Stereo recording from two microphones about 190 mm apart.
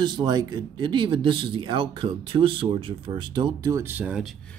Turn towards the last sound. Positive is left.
turn(degrees=-5)  # may be behind; listen again after turning